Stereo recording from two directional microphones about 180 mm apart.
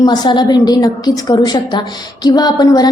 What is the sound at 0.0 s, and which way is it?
A woman's voice, 25° left (ahead or behind).